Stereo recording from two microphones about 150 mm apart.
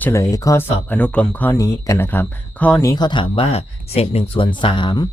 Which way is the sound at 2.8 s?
30° left (ahead or behind).